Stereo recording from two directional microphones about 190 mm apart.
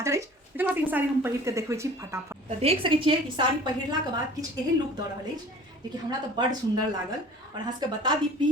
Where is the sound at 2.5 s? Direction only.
35° right (ahead or behind).